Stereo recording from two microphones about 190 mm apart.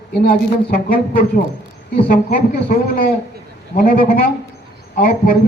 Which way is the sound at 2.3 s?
50° left (ahead or behind).